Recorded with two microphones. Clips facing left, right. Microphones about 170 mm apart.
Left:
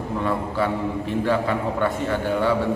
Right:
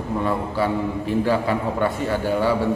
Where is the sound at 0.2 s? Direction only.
5° right (ahead or behind).